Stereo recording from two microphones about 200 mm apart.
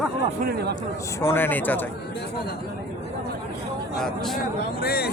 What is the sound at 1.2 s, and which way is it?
Speech, 10° left (ahead or behind).